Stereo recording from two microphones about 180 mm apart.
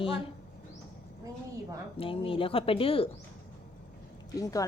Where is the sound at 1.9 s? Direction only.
30° left (ahead or behind).